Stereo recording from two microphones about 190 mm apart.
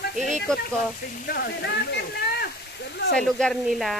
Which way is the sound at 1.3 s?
60° left (ahead or behind).